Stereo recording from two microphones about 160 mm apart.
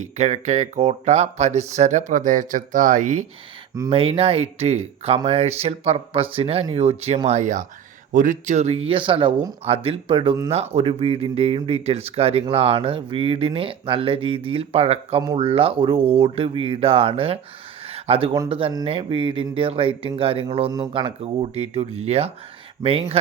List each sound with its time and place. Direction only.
0.0 s speech: 45° right (ahead or behind)
3.8 s speech: 35° right (ahead or behind)
17.8 s a sound: 35° right (ahead or behind)
18.4 s speech: 35° right (ahead or behind)